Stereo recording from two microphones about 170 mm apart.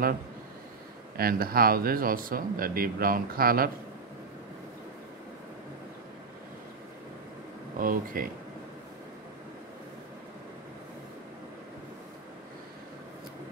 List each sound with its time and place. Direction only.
1.1 s speech: 60° right (ahead or behind)
7.8 s speech: 55° right (ahead or behind)